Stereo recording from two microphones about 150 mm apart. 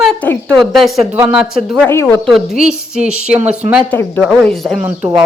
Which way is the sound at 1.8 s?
15° left (ahead or behind).